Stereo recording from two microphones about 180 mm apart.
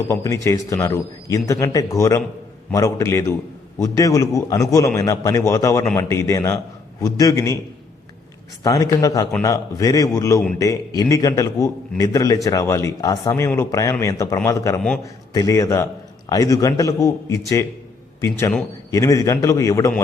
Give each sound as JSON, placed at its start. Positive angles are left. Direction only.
{"t": 0.1, "sound": "a man's voice", "side_deg": 15}
{"t": 8.6, "sound": "a man's voice", "side_deg": 20}